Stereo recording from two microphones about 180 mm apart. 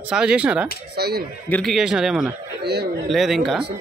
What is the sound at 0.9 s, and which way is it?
Speech, 60° right (ahead or behind).